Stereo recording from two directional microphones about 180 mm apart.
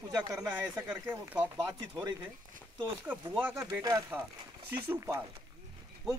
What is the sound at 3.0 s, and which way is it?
Speech, 10° right (ahead or behind).